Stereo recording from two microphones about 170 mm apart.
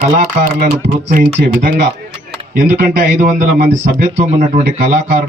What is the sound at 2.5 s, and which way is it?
Speech, 50° right (ahead or behind).